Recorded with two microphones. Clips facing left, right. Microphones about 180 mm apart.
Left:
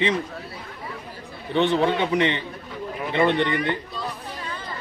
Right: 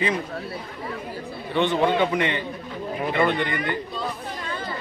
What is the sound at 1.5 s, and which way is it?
Speech, 25° left (ahead or behind).